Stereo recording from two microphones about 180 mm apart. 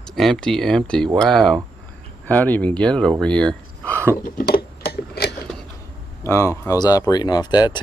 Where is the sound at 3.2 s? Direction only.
5° left (ahead or behind).